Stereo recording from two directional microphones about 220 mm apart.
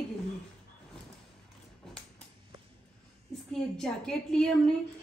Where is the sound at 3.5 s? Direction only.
Centre (ahead or behind).